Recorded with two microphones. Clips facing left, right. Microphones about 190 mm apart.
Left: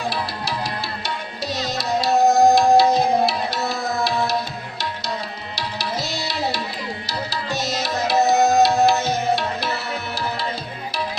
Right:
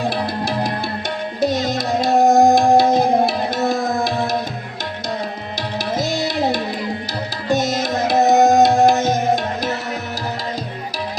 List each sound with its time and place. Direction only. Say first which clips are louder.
0.1 s music: right 5 dB; 50° right (ahead or behind)
5.5 s tabla: right 5 dB; 50° right (ahead or behind)
7.1 s music: right 6 dB; 50° right (ahead or behind)